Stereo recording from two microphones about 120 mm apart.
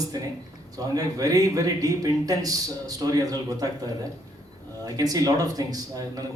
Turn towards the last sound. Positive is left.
turn(degrees=-30)  # may be behind; listen again after turning